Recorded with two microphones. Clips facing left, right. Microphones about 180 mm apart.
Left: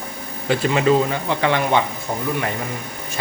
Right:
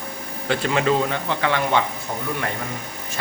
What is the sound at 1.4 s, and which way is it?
Speech, 20° left (ahead or behind).